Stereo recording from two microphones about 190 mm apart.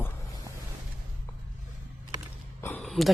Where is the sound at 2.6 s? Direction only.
5° left (ahead or behind).